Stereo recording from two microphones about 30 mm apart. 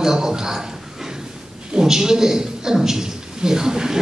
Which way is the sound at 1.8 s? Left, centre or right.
Centre.